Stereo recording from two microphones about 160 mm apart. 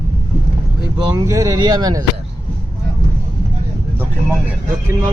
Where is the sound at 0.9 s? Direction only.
20° right (ahead or behind).